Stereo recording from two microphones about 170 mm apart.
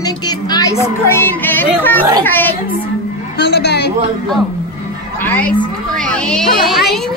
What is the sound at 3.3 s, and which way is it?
Speech, 75° left (ahead or behind).